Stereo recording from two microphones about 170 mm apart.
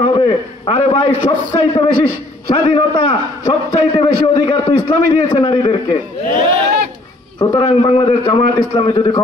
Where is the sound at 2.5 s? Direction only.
30° left (ahead or behind).